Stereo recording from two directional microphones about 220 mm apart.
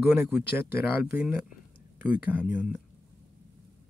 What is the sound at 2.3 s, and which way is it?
Speech, 5° right (ahead or behind).